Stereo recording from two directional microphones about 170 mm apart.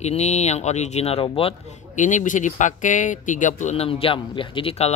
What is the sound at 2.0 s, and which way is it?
Speech, 45° left (ahead or behind).